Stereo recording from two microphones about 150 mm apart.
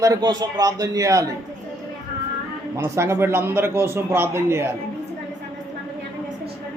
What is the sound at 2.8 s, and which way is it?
A man's voice, 15° right (ahead or behind).